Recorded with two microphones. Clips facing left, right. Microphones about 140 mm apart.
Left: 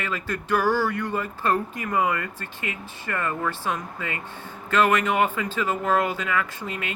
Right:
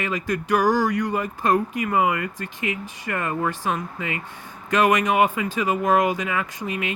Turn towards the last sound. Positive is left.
turn(degrees=-20)  # may be behind; listen again after turning